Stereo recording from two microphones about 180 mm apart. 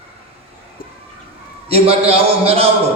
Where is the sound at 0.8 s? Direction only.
55° left (ahead or behind).